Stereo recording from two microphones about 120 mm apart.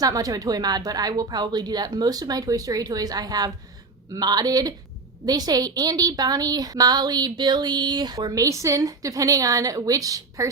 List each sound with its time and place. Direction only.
0.0 s a woman's voice: 30° right (ahead or behind)